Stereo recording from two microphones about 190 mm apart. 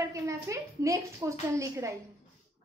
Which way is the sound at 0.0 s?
15° right (ahead or behind).